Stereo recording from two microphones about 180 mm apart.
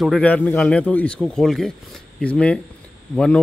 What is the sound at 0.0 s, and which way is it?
Speech, 5° left (ahead or behind).